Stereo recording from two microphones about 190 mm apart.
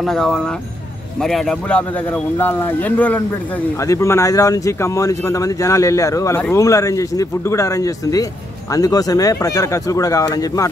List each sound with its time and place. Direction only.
0.0 s speech: centre (ahead or behind); by 10.7 s 20° left (ahead or behind)